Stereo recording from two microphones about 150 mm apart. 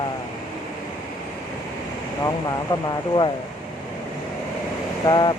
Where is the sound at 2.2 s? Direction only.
25° left (ahead or behind).